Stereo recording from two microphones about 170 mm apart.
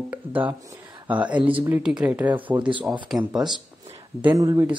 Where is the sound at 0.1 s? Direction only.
10° right (ahead or behind).